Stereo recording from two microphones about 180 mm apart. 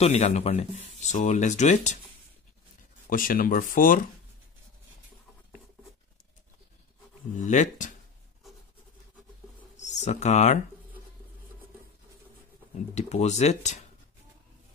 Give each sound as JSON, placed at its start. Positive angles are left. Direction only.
{"t": 0.0, "sound": "speech", "side_deg": 40}
{"t": 3.1, "sound": "speech", "side_deg": 50}
{"t": 7.3, "sound": "speech", "side_deg": 45}
{"t": 9.8, "sound": "speech", "side_deg": 40}
{"t": 12.9, "sound": "speech", "side_deg": 40}